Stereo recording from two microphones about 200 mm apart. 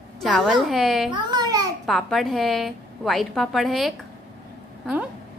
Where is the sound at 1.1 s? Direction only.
20° right (ahead or behind).